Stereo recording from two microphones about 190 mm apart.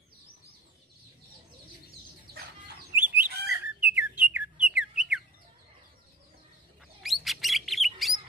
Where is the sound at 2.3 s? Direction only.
55° right (ahead or behind).